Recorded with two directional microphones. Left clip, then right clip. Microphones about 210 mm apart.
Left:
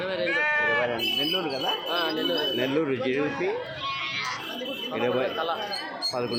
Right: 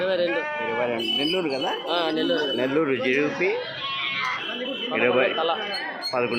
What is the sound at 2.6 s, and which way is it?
Speech, centre (ahead or behind).